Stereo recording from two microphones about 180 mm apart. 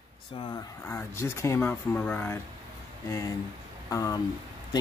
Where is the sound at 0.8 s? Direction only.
15° left (ahead or behind).